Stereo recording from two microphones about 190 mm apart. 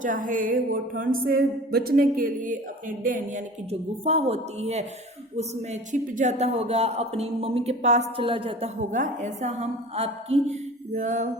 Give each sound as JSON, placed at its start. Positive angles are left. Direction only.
{"t": 0.0, "sound": "speech", "side_deg": -45}
{"t": 3.7, "sound": "speech", "side_deg": -30}
{"t": 5.9, "sound": "speech", "side_deg": -40}